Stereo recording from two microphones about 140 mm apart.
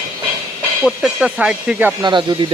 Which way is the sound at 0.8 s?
5° right (ahead or behind).